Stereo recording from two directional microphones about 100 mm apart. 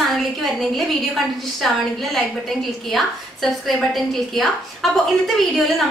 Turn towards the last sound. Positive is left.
turn(degrees=0)  # may be behind; listen again after turning